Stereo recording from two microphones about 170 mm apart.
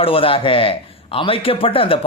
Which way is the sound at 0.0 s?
35° left (ahead or behind).